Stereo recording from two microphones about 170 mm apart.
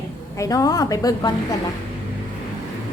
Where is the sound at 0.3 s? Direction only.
20° left (ahead or behind).